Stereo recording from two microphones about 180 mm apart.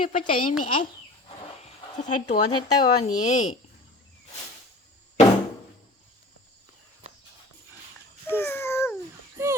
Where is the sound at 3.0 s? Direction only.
40° left (ahead or behind).